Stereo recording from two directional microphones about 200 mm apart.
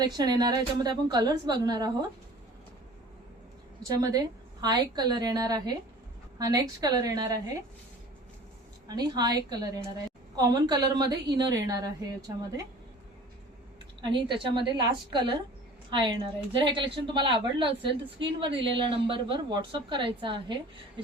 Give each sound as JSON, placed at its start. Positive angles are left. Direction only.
{"t": 0.0, "sound": "speech", "side_deg": -20}
{"t": 3.8, "sound": "a woman's voice", "side_deg": -20}
{"t": 8.9, "sound": "a woman's voice", "side_deg": -20}
{"t": 14.0, "sound": "speech", "side_deg": -25}